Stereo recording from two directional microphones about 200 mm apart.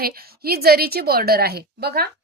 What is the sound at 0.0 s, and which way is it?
A woman's voice, 50° right (ahead or behind).